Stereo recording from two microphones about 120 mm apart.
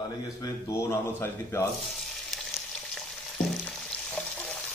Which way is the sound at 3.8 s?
10° left (ahead or behind).